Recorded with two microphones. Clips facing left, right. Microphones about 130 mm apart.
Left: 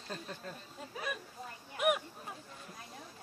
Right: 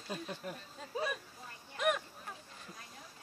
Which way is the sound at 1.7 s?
10° left (ahead or behind).